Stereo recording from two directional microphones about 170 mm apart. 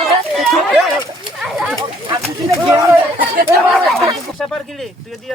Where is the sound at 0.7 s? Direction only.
Centre (ahead or behind).